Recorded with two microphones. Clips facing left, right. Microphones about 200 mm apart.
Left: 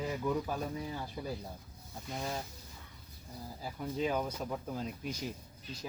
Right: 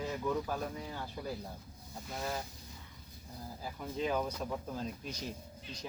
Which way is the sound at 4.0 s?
10° left (ahead or behind).